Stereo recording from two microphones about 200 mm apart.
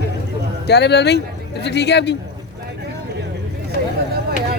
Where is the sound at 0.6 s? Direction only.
55° left (ahead or behind).